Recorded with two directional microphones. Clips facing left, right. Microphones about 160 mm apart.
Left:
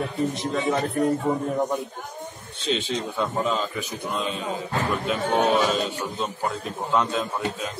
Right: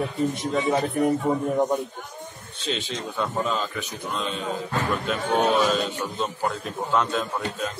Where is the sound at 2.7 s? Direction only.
Centre (ahead or behind).